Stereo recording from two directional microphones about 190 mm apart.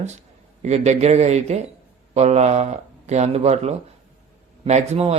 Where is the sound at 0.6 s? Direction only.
35° right (ahead or behind).